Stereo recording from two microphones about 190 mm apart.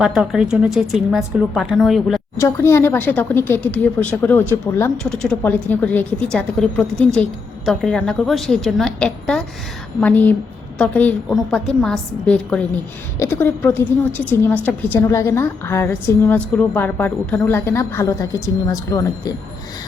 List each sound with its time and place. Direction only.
0.0 s a woman's voice: centre (ahead or behind)
2.4 s a woman's voice: 15° left (ahead or behind)